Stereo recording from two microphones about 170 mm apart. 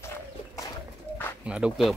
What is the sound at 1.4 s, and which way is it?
Speech, 5° right (ahead or behind).